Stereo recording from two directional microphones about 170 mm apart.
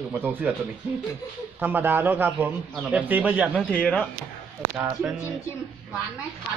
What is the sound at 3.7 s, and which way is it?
Speech, 5° left (ahead or behind).